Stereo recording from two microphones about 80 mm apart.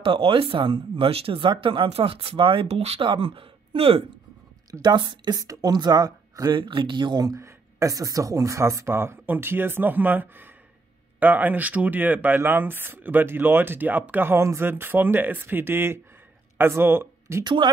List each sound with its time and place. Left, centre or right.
0.0 s speech: right
4.8 s speech: right
6.6 s speech: right
7.3 s speech: right
17.4 s speech: right